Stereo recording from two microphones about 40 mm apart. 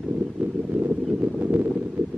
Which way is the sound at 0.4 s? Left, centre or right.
Right.